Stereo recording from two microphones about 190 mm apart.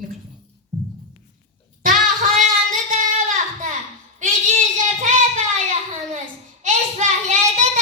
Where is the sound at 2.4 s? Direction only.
40° right (ahead or behind).